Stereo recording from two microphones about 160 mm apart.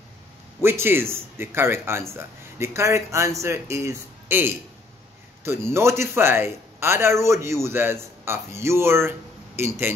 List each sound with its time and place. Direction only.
0.6 s a man's voice: 15° right (ahead or behind)